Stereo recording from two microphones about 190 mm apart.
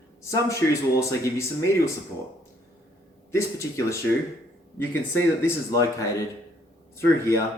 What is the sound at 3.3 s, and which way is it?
Speech, 15° left (ahead or behind).